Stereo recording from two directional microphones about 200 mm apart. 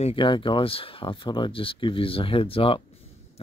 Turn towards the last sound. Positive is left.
turn(degrees=30)  # may be behind; listen again after turning